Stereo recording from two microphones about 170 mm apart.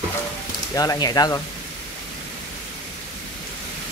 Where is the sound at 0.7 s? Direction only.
20° left (ahead or behind).